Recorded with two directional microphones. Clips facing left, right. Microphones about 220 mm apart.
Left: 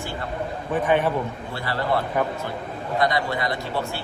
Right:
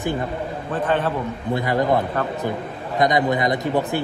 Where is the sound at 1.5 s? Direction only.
15° right (ahead or behind).